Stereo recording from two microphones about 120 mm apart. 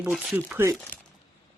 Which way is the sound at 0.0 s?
10° right (ahead or behind).